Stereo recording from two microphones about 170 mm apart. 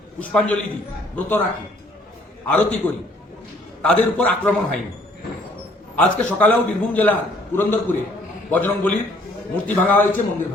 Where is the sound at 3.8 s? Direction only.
5° left (ahead or behind).